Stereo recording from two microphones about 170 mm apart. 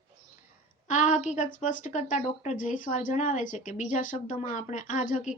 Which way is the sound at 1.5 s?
45° left (ahead or behind).